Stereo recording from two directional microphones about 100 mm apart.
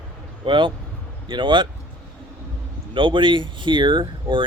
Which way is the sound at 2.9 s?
55° right (ahead or behind).